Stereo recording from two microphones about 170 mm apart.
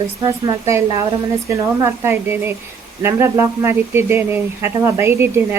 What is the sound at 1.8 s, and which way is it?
Speech, 15° right (ahead or behind).